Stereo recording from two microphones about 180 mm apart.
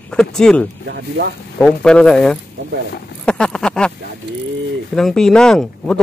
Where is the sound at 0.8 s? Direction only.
70° right (ahead or behind).